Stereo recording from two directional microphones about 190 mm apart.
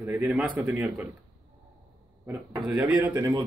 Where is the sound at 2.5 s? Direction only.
5° right (ahead or behind).